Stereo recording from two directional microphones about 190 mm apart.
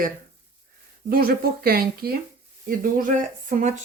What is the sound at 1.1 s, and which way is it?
Speech, 50° right (ahead or behind).